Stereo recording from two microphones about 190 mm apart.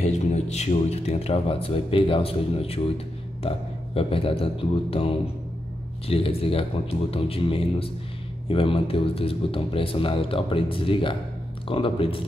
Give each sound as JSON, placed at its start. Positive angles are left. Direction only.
{"t": 0.0, "sound": "speech", "side_deg": 35}